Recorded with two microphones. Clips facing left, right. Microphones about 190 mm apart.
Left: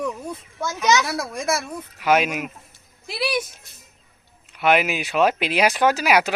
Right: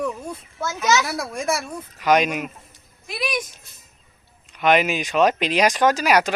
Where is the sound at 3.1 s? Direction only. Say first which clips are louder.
Left 2 dB; 30° left (ahead or behind).